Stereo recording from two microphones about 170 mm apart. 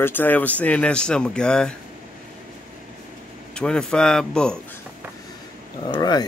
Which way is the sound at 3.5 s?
5° left (ahead or behind).